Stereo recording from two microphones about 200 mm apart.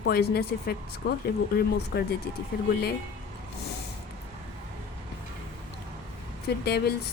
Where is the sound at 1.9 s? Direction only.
55° left (ahead or behind).